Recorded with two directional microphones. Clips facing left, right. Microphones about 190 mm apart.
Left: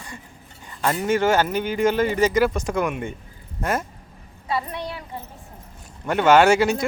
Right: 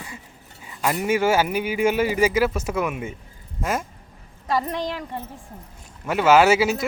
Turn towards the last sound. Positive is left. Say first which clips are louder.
# left 1 dB
turn(degrees=-5)  # may be behind; listen again after turning